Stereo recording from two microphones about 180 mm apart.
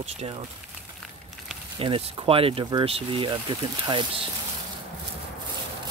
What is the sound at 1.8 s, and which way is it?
Speech, 30° right (ahead or behind).